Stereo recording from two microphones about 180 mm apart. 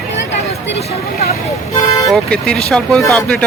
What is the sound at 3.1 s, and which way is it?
Speech, 5° left (ahead or behind).